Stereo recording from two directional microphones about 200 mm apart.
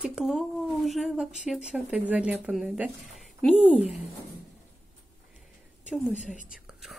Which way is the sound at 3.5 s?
30° left (ahead or behind).